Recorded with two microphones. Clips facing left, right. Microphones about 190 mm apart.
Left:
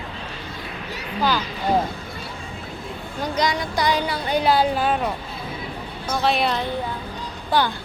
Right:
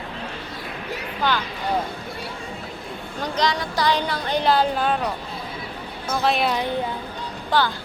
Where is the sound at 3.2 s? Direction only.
10° left (ahead or behind).